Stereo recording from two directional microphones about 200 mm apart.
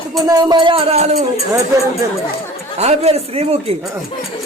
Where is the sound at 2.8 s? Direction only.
30° right (ahead or behind).